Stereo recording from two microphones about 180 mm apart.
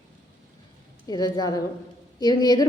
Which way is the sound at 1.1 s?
20° left (ahead or behind).